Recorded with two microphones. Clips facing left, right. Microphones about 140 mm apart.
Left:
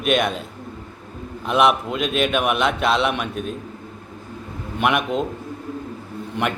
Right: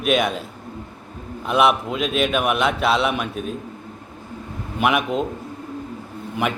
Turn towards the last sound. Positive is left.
turn(degrees=-5)  # may be behind; listen again after turning